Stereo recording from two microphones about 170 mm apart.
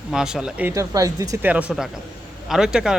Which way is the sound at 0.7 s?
20° right (ahead or behind).